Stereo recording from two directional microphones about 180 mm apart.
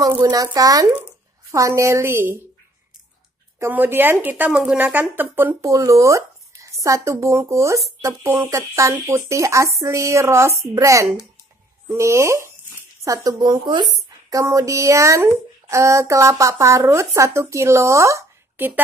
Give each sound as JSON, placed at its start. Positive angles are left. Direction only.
{"t": 0.0, "sound": "speech", "side_deg": -20}
{"t": 3.5, "sound": "speech", "side_deg": -10}